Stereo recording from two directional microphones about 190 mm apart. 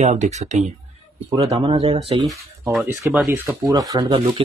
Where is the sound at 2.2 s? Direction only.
5° right (ahead or behind).